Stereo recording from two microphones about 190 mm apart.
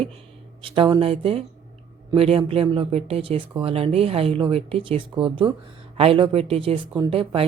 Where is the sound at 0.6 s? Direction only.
25° right (ahead or behind).